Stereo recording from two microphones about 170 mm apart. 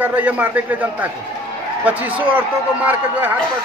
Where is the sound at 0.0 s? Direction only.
10° right (ahead or behind).